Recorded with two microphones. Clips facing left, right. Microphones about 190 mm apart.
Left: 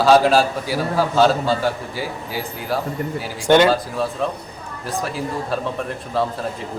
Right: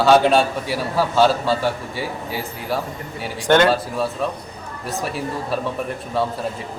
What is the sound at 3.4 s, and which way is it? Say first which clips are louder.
Speech: left 1 dB; 10° left (ahead or behind).